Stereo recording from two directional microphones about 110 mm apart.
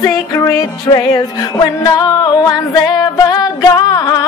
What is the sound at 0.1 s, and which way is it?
Music, 30° left (ahead or behind).